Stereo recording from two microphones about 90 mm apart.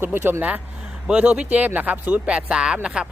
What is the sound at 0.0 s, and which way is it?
Speech, 25° right (ahead or behind).